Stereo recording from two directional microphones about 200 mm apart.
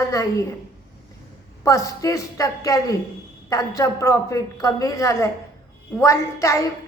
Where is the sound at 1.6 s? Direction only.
15° left (ahead or behind).